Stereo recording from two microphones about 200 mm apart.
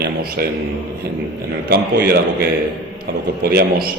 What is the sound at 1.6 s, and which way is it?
A man's voice, 50° right (ahead or behind).